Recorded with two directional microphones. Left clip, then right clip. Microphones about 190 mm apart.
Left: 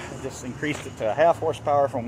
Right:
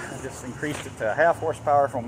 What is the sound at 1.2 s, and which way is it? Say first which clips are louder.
Speech: left 1 dB; 20° left (ahead or behind).